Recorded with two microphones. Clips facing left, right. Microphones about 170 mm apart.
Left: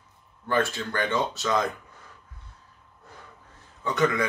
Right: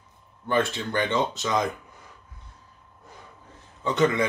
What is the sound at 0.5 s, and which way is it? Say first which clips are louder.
Speech: right 1 dB; 20° right (ahead or behind).